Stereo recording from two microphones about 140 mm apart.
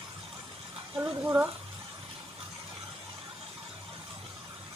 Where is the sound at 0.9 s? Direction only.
10° right (ahead or behind).